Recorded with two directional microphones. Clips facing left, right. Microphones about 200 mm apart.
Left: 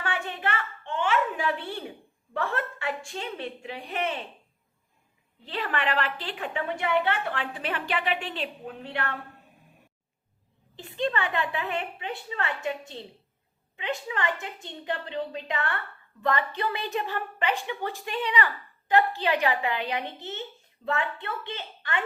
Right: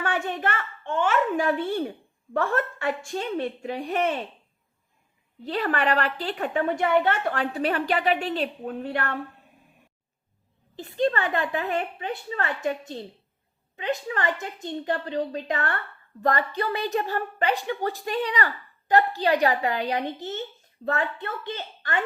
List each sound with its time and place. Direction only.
0.0 s a child's voice: 45° right (ahead or behind)
5.5 s a woman's voice: 40° right (ahead or behind)
10.8 s a woman's voice: 40° right (ahead or behind)